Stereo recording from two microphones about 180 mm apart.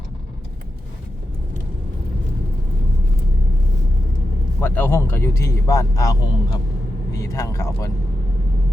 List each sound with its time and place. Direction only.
4.6 s speech: 10° left (ahead or behind)